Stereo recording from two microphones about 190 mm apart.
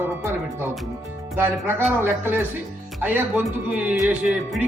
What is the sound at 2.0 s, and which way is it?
Speech, 10° right (ahead or behind).